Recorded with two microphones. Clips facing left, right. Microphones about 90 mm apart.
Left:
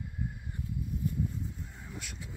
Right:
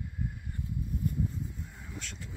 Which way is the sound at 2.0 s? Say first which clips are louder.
Right 1 dB; 10° left (ahead or behind).